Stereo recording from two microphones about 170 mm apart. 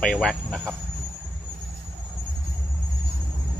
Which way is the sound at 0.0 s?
5° left (ahead or behind).